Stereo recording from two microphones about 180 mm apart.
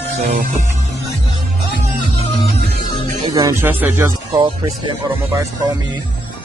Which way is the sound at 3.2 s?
20° right (ahead or behind).